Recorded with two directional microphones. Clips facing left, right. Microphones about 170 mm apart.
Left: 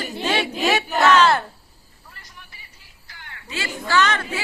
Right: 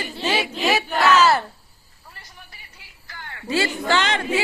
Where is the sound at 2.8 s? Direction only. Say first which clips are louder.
Right 4 dB; 75° right (ahead or behind).